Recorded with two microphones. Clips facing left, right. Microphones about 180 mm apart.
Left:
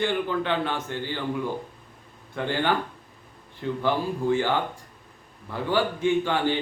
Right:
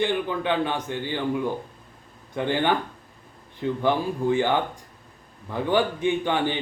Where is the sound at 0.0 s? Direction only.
15° right (ahead or behind).